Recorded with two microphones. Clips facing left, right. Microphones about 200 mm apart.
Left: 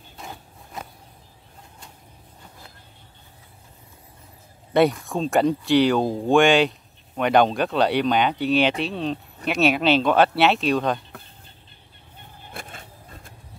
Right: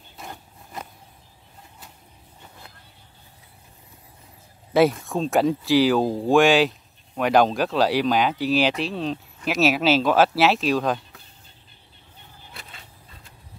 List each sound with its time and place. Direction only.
0.2 s a sound: centre (ahead or behind)
4.7 s speech: centre (ahead or behind)
12.4 s vehicle: 50° left (ahead or behind)